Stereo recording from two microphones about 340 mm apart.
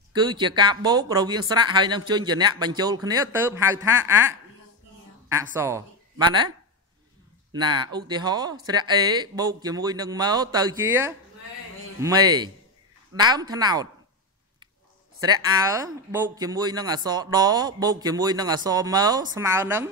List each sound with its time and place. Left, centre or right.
0.1 s a woman's voice: centre
7.5 s speech: centre
15.1 s speech: centre